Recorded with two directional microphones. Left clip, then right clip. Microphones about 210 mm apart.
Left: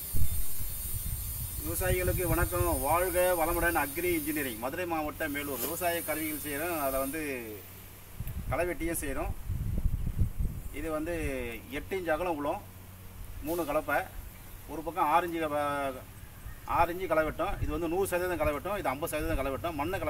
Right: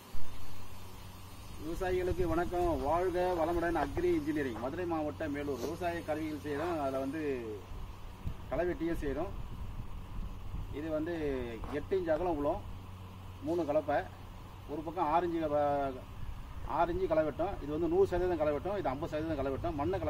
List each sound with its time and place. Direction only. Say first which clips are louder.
1.9 s speech: left 2 dB; centre (ahead or behind)
8.5 s speech: left 2 dB; 5° left (ahead or behind)
10.8 s speech: left 2 dB; centre (ahead or behind)